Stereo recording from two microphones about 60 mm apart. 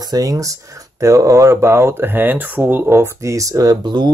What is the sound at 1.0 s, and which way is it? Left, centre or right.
Speech, right.